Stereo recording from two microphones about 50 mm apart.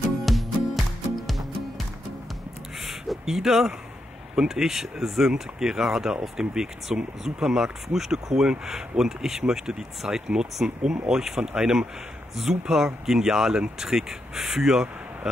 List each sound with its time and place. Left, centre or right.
0.2 s music: centre
2.8 s a sound: centre
4.4 s speech: centre